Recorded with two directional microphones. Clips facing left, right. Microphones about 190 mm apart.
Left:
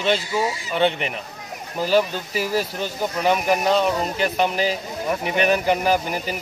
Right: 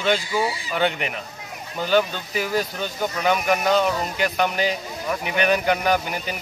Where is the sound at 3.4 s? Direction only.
35° left (ahead or behind).